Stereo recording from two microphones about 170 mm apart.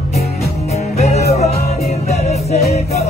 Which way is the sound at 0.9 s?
40° left (ahead or behind).